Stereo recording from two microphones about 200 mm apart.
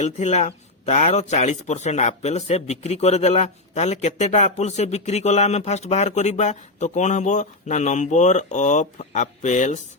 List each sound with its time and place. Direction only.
0.0 s speech: 35° left (ahead or behind)